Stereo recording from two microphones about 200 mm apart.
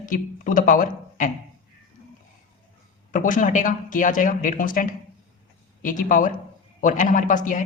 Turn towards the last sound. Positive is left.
turn(degrees=40)  # may be behind; listen again after turning